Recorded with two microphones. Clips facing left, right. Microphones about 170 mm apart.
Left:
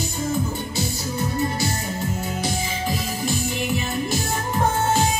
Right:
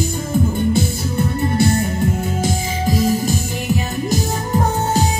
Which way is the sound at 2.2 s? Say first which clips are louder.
Right 5 dB; 45° right (ahead or behind).